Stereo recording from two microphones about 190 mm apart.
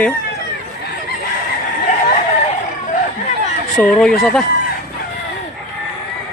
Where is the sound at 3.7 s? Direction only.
5° left (ahead or behind).